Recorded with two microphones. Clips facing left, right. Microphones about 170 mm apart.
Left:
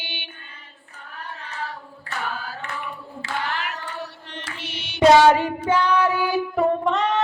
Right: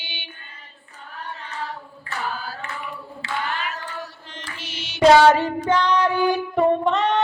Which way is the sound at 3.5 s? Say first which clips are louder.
Even; 70° left (ahead or behind).